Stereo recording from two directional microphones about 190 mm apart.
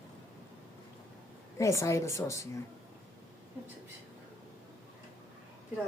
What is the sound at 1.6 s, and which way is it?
Speech, 15° left (ahead or behind).